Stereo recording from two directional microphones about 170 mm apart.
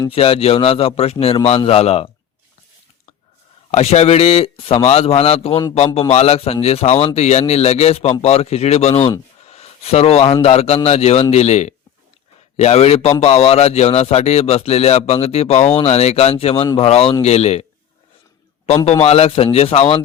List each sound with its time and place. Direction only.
0.1 s speech: 35° left (ahead or behind)
3.7 s speech: 35° left (ahead or behind)
9.5 s a sound: 35° left (ahead or behind)
10.4 s speech: 35° left (ahead or behind)
18.9 s speech: 35° left (ahead or behind)